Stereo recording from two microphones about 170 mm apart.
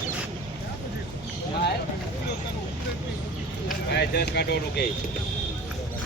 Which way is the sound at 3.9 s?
75° left (ahead or behind).